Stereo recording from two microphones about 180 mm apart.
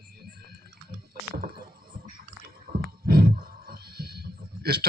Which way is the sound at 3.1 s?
55° right (ahead or behind).